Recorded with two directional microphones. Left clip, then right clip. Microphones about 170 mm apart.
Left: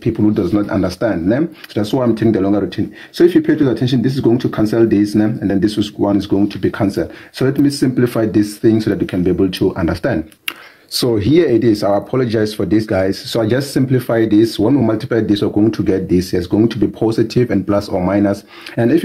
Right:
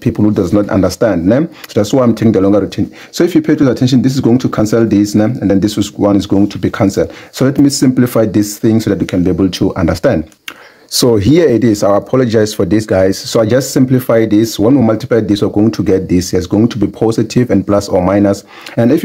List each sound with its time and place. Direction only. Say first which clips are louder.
0.0 s speech: right 3 dB; 40° right (ahead or behind)
10.9 s speech: right 5 dB; 35° right (ahead or behind)